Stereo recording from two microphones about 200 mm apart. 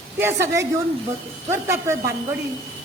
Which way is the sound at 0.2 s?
15° right (ahead or behind).